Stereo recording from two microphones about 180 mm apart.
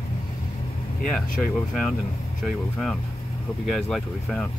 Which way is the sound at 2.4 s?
Centre (ahead or behind).